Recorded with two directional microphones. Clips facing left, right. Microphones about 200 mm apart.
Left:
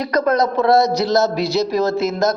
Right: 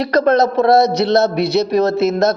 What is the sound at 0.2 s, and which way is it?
Speech, 25° right (ahead or behind).